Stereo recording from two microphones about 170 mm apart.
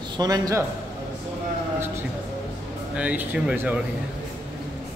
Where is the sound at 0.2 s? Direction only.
20° right (ahead or behind).